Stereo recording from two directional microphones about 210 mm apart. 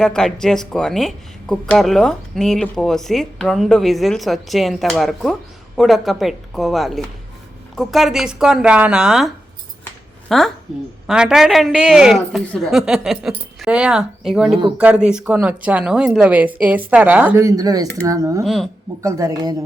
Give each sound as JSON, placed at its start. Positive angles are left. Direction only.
{"t": 0.0, "sound": "a woman's voice", "side_deg": 0}
{"t": 18.4, "sound": "speech", "side_deg": 0}
{"t": 19.0, "sound": "speech", "side_deg": -15}